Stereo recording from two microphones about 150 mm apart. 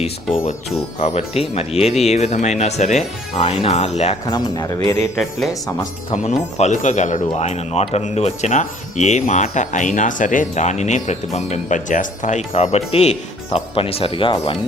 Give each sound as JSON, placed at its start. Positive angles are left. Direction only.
{"t": 0.9, "sound": "speech", "side_deg": 45}
{"t": 4.3, "sound": "speech", "side_deg": 25}
{"t": 5.1, "sound": "speech", "side_deg": 0}
{"t": 6.2, "sound": "speech", "side_deg": 50}